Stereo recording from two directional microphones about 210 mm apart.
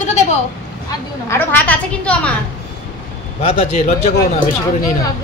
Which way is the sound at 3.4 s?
30° left (ahead or behind).